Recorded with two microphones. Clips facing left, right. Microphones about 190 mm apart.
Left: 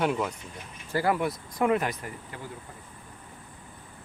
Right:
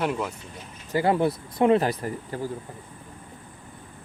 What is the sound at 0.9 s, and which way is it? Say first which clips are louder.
Speech: right 4 dB; 25° right (ahead or behind).